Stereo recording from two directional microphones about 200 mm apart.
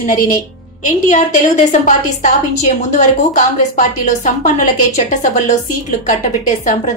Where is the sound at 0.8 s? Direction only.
40° left (ahead or behind).